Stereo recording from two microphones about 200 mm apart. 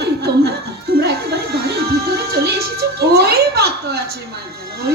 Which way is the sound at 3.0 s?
50° right (ahead or behind).